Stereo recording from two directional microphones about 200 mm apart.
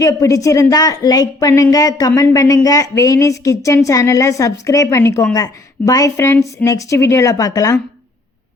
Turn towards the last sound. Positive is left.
turn(degrees=15)  # may be behind; listen again after turning